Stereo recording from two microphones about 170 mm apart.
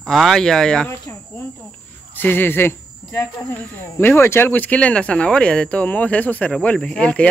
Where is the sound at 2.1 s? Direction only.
10° left (ahead or behind).